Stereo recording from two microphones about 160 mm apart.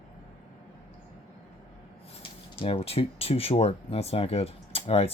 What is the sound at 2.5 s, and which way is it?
Speech, 40° left (ahead or behind).